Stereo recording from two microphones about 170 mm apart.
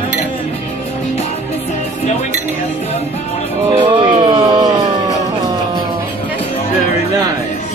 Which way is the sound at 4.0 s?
30° right (ahead or behind).